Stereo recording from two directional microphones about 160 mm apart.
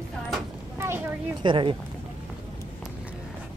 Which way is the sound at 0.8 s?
15° right (ahead or behind).